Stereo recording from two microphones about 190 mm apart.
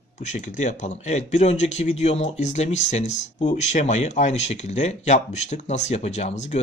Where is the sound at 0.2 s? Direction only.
40° left (ahead or behind).